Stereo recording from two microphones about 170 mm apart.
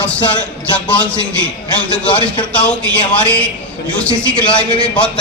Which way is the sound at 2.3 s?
5° left (ahead or behind).